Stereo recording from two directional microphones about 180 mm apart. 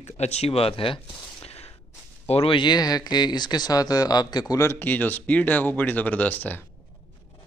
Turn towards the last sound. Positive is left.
turn(degrees=10)  # may be behind; listen again after turning